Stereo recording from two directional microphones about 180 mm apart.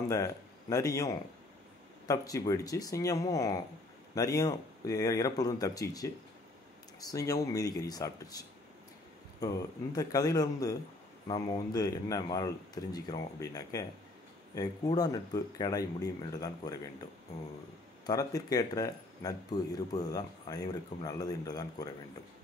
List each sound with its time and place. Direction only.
0.1 s speech: 20° left (ahead or behind)
18.0 s speech: 20° left (ahead or behind)